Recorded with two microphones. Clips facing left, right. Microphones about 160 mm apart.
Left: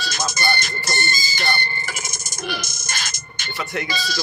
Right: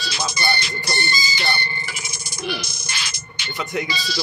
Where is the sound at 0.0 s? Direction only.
45° left (ahead or behind).